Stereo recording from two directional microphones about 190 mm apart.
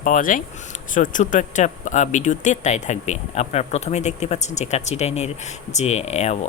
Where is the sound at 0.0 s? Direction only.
45° left (ahead or behind).